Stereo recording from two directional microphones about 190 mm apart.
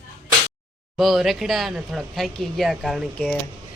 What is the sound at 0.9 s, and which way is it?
Speech, centre (ahead or behind).